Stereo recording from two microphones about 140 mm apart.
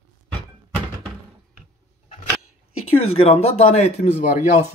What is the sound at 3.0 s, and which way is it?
Speech, 50° left (ahead or behind).